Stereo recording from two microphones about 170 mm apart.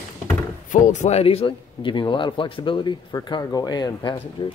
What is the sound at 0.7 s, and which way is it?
Speech, 45° left (ahead or behind).